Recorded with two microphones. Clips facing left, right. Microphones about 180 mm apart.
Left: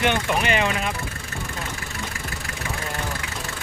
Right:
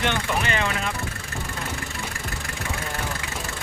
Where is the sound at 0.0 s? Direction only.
15° left (ahead or behind).